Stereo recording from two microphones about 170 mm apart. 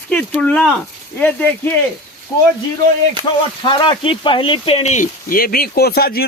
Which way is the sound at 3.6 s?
25° left (ahead or behind).